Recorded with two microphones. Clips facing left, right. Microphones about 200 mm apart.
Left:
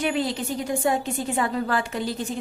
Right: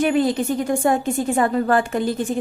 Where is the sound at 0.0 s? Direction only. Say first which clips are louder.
Right 7 dB; 50° right (ahead or behind).